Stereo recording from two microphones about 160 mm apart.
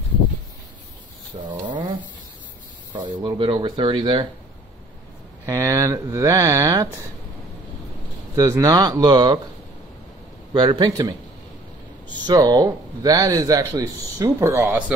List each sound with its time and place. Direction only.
1.4 s a sound: 30° right (ahead or behind)
2.9 s speech: 30° right (ahead or behind)
5.5 s speech: 20° right (ahead or behind)
8.4 s speech: 25° right (ahead or behind)
10.5 s speech: 30° right (ahead or behind); by 15.0 s 10° right (ahead or behind)